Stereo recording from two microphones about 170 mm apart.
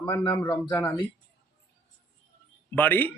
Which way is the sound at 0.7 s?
10° left (ahead or behind).